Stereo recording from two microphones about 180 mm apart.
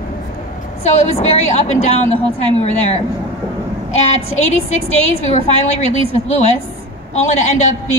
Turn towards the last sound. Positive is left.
turn(degrees=40)  # may be behind; listen again after turning